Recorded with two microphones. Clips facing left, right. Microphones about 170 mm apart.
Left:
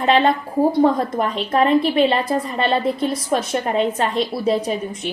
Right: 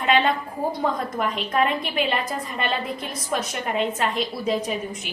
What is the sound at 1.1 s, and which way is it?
A woman's voice, 35° left (ahead or behind).